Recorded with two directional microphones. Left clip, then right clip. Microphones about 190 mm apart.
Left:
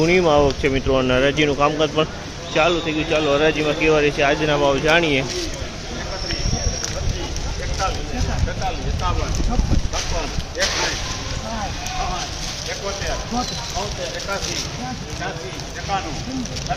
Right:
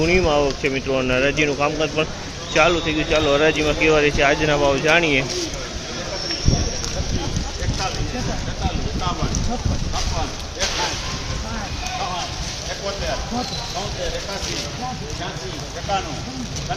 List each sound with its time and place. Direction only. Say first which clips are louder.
0.0 s speech: left 2 dB; 15° left (ahead or behind)
2.5 s speech: right 1 dB; centre (ahead or behind)